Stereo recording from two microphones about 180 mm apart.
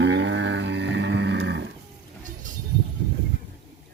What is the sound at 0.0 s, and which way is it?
Music, 75° right (ahead or behind).